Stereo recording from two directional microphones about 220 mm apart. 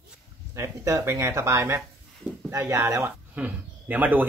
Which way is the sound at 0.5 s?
15° right (ahead or behind).